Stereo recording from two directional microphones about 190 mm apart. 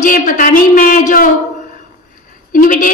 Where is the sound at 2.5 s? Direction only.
45° left (ahead or behind).